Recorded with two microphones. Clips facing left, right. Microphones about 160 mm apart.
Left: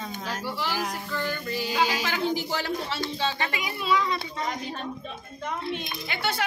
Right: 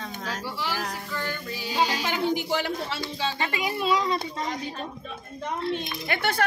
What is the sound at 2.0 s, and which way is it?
Speech, 20° right (ahead or behind).